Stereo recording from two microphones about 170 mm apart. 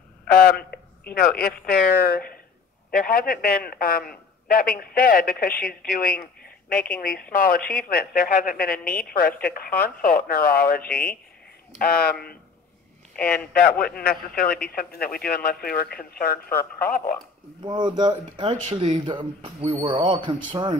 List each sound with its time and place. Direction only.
0.3 s a woman's voice: 65° left (ahead or behind)
13.1 s speech: 5° left (ahead or behind)
13.7 s a woman's voice: 60° left (ahead or behind)
17.6 s speech: 25° right (ahead or behind)